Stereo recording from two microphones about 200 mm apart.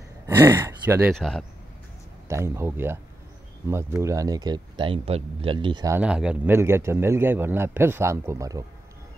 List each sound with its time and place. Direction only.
0.4 s speech: 15° right (ahead or behind)
1.1 s speech: centre (ahead or behind)
2.2 s speech: 15° right (ahead or behind)
5.9 s speech: 5° right (ahead or behind)